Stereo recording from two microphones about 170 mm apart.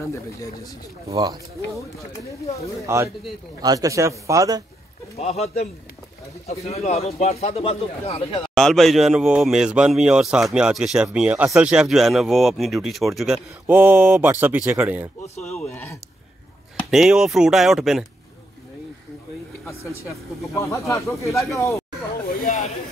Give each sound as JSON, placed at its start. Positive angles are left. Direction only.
{"t": 0.0, "sound": "speech", "side_deg": 20}
{"t": 1.0, "sound": "speech", "side_deg": -20}
{"t": 2.9, "sound": "speech", "side_deg": -15}
{"t": 5.1, "sound": "speech", "side_deg": 40}
{"t": 8.5, "sound": "speech", "side_deg": 0}
{"t": 15.7, "sound": "a sound", "side_deg": 15}
{"t": 16.9, "sound": "speech", "side_deg": 0}
{"t": 19.6, "sound": "speech", "side_deg": 15}